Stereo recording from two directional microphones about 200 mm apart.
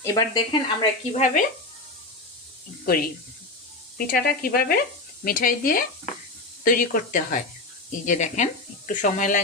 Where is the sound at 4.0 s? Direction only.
45° left (ahead or behind).